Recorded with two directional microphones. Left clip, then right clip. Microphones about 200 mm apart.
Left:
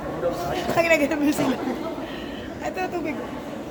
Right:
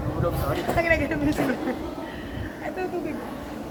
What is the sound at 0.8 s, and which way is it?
Speech, 50° left (ahead or behind).